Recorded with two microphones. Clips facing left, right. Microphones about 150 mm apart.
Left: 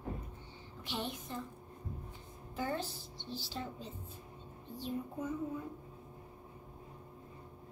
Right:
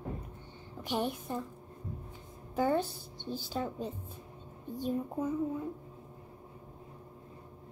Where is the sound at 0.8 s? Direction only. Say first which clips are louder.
Right 7 dB; 45° right (ahead or behind).